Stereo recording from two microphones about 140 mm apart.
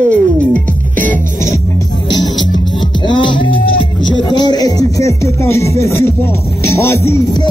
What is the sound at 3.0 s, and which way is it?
Music, 35° left (ahead or behind).